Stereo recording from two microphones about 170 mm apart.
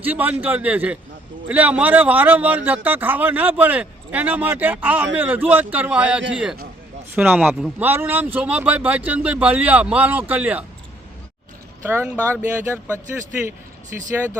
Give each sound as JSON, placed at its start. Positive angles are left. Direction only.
{"t": 0.0, "sound": "a man's voice", "side_deg": -10}
{"t": 11.8, "sound": "a man's voice", "side_deg": -15}